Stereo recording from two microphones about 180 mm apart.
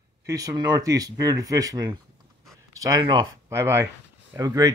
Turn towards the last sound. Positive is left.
turn(degrees=-20)  # may be behind; listen again after turning